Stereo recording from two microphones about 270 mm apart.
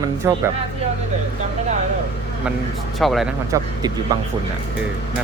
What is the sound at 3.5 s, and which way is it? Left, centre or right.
Speech, centre.